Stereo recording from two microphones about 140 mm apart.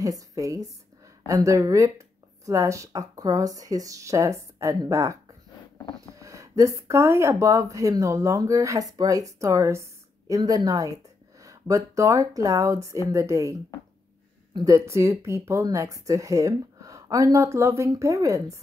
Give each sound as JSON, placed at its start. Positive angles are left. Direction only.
{"t": 0.0, "sound": "speech", "side_deg": -25}